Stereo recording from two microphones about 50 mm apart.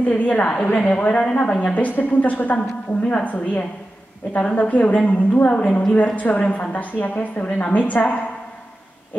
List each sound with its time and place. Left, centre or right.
0.0 s a woman's voice: left
1.5 s a woman's voice: left